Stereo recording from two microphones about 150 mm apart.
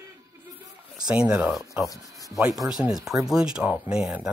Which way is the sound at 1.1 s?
5° right (ahead or behind).